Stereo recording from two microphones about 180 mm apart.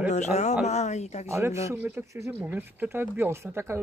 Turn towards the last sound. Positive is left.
turn(degrees=-15)  # may be behind; listen again after turning